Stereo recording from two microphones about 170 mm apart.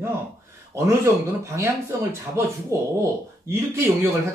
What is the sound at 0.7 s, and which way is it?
Speech, 15° right (ahead or behind).